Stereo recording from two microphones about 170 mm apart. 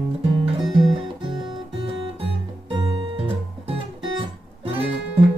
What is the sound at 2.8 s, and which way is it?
Guitar, 30° right (ahead or behind).